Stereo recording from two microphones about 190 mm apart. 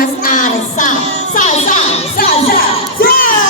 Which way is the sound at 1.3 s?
40° left (ahead or behind).